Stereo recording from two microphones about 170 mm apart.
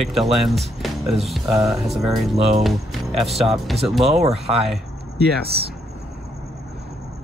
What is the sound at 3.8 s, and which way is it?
Speech, centre (ahead or behind).